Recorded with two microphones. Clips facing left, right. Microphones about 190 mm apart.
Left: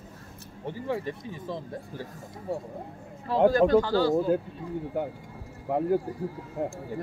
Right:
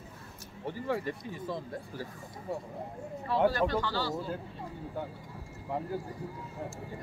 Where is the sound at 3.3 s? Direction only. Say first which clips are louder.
Left 7 dB; 40° left (ahead or behind).